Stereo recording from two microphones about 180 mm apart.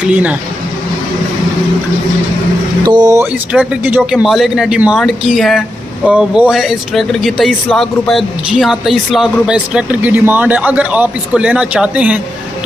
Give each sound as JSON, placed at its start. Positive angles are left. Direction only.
{"t": 0.0, "sound": "speech", "side_deg": -5}
{"t": 2.8, "sound": "speech", "side_deg": -20}
{"t": 3.5, "sound": "speech", "side_deg": -10}